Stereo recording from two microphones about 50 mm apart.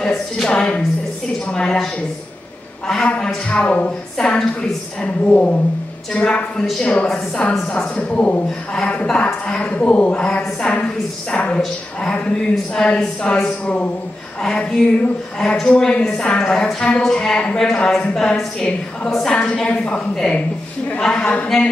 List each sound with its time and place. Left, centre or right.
0.0 s a woman's voice: centre
3.4 s a woman's voice: left
5.0 s a woman's voice: left
7.4 s a woman's voice: centre
7.7 s a woman's voice: left
10.1 s a woman's voice: centre
21.5 s speech: centre